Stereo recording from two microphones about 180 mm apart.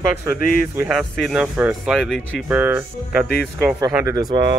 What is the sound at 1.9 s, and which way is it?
Speech, centre (ahead or behind).